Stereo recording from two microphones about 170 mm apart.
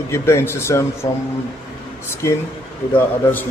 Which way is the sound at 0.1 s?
15° left (ahead or behind).